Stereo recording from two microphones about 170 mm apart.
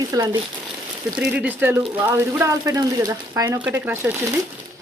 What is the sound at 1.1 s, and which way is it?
Speech, 5° right (ahead or behind).